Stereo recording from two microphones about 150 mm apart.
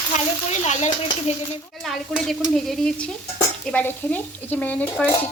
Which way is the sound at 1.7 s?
Centre (ahead or behind).